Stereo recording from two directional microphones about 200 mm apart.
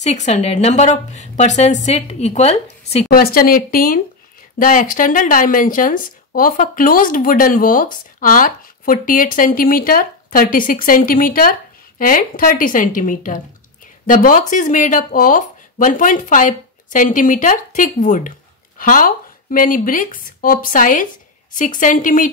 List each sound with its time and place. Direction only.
0.0 s speech: 35° left (ahead or behind)
3.1 s speech: 45° left (ahead or behind)